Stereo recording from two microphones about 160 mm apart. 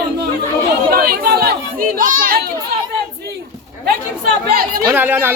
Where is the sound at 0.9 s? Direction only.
70° right (ahead or behind).